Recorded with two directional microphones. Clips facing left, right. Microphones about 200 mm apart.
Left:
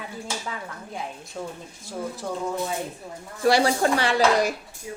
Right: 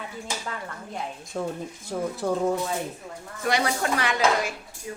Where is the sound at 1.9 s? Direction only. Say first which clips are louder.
Right 3 dB; 55° right (ahead or behind).